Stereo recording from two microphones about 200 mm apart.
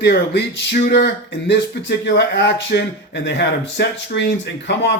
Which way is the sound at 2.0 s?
60° left (ahead or behind).